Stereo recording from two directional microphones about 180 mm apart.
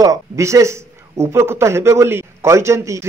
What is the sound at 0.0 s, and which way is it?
A man's voice, 15° right (ahead or behind).